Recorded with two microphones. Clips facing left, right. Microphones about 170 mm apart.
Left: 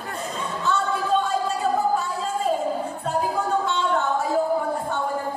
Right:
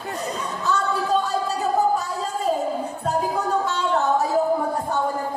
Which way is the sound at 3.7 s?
40° right (ahead or behind).